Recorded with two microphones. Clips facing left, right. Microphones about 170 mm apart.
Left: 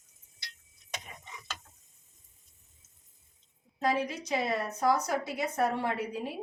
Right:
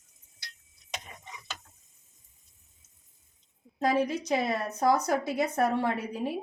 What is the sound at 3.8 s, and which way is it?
A woman's voice, 40° right (ahead or behind).